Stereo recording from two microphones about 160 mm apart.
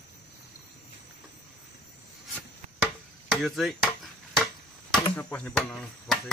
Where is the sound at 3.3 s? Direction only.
Centre (ahead or behind).